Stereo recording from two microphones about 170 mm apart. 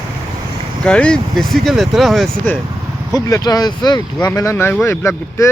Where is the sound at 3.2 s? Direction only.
20° left (ahead or behind).